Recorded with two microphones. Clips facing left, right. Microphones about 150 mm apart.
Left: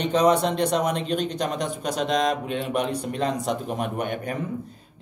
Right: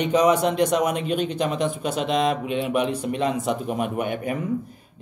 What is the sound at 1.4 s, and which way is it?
Speech, 40° left (ahead or behind).